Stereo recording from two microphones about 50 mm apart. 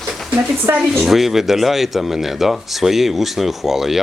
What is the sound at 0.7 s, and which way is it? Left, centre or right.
Speech, right.